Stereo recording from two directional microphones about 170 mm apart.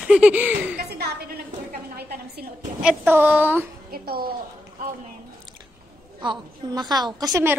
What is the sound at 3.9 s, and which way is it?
Music, 65° right (ahead or behind).